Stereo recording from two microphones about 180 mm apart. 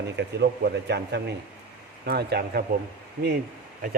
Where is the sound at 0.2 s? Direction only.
65° right (ahead or behind).